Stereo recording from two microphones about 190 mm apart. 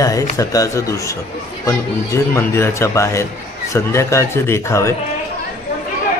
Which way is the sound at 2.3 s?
15° left (ahead or behind).